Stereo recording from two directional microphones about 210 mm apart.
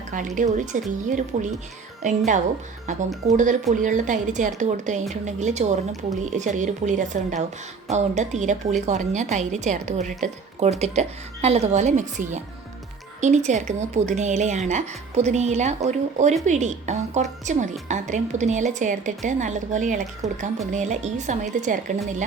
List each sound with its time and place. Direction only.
0.3 s speech: 35° right (ahead or behind)